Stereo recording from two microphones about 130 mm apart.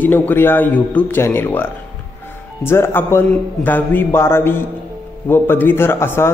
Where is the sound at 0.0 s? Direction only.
15° left (ahead or behind).